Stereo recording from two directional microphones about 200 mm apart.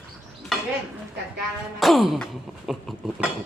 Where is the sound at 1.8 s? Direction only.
Centre (ahead or behind).